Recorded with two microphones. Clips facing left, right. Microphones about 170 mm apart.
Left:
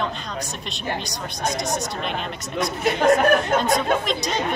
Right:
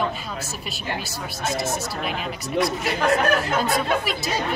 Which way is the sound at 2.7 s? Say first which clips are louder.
Left 9 dB; 20° left (ahead or behind).